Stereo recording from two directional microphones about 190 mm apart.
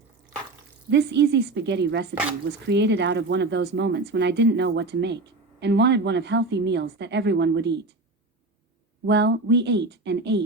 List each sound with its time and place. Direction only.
0.9 s a woman's voice: 65° right (ahead or behind)
9.0 s speech: 65° right (ahead or behind)